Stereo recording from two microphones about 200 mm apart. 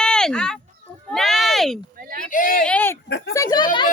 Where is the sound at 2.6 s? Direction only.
5° left (ahead or behind).